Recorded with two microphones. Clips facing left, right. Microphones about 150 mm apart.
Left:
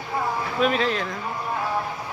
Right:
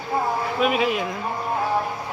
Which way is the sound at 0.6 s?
10° right (ahead or behind).